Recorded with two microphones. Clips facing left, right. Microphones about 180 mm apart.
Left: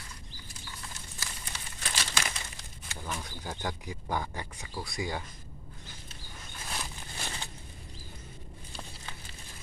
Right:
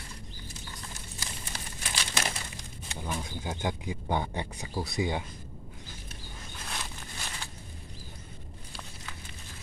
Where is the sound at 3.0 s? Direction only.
20° right (ahead or behind).